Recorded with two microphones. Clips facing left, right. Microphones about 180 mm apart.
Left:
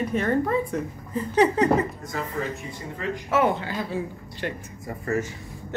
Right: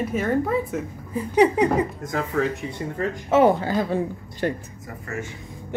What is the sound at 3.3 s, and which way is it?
A man's voice, 40° right (ahead or behind).